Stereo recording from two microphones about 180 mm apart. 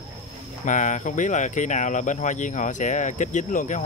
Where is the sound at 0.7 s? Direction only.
45° left (ahead or behind).